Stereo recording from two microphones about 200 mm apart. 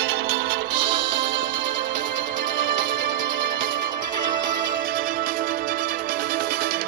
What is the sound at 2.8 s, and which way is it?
Music, 45° right (ahead or behind).